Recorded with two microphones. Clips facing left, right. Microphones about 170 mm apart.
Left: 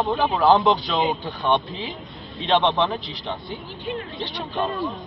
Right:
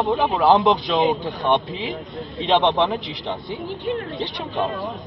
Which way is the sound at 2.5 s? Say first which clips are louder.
Right 2 dB; 20° right (ahead or behind).